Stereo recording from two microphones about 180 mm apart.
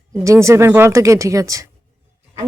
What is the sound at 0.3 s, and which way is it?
Speech, 15° right (ahead or behind).